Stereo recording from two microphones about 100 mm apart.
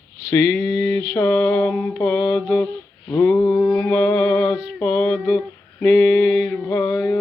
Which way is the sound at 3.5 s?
5° left (ahead or behind).